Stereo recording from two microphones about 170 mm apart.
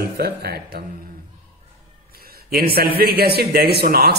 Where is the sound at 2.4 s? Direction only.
65° right (ahead or behind).